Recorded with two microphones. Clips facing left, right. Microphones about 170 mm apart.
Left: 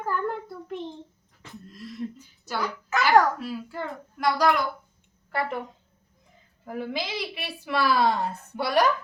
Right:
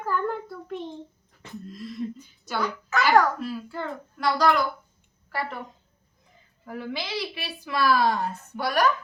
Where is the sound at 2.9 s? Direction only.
10° left (ahead or behind).